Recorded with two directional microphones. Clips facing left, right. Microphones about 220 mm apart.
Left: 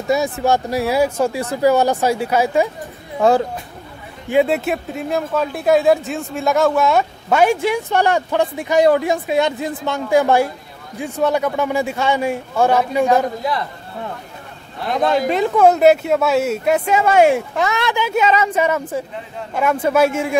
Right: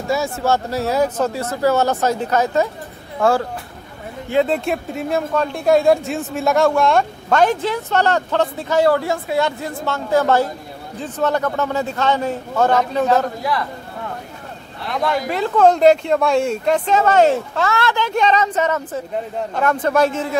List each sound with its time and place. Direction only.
0.1 s speech: 15° left (ahead or behind)
15.0 s speech: 20° left (ahead or behind)